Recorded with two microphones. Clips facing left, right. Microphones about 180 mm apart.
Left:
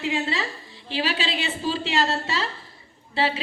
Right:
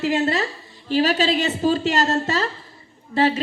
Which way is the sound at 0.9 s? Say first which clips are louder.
Right 8 dB; 45° right (ahead or behind).